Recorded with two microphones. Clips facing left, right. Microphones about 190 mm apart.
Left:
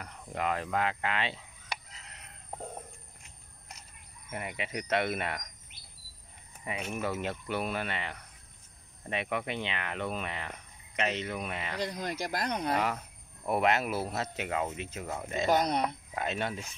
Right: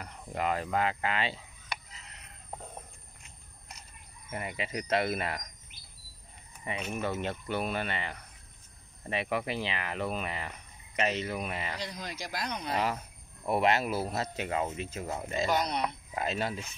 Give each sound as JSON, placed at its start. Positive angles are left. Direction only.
{"t": 0.0, "sound": "speech", "side_deg": -5}
{"t": 4.3, "sound": "speech", "side_deg": 0}
{"t": 6.8, "sound": "speech", "side_deg": 5}
{"t": 11.8, "sound": "speech", "side_deg": 55}
{"t": 13.5, "sound": "speech", "side_deg": 0}
{"t": 15.4, "sound": "speech", "side_deg": 50}
{"t": 16.2, "sound": "speech", "side_deg": -5}